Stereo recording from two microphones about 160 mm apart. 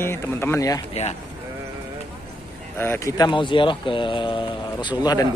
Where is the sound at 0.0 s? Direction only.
15° left (ahead or behind).